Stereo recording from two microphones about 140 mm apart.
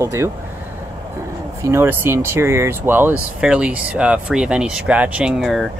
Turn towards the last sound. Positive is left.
turn(degrees=0)  # may be behind; listen again after turning